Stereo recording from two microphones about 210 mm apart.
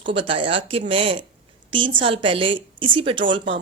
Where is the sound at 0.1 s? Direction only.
25° right (ahead or behind).